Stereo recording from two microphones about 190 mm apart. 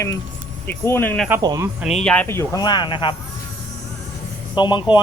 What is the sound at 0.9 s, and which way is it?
Speech, 10° left (ahead or behind).